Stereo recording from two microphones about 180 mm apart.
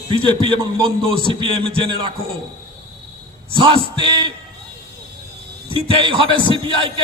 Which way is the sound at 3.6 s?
30° right (ahead or behind).